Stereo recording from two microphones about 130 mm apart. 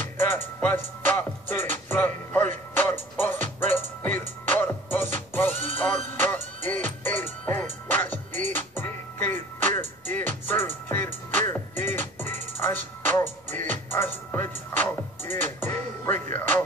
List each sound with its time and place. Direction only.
0.2 s music: 15° left (ahead or behind)